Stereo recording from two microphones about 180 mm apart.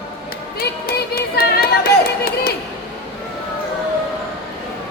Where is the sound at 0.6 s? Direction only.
60° left (ahead or behind).